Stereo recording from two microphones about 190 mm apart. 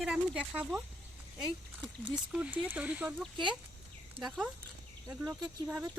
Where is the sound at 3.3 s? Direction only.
25° right (ahead or behind).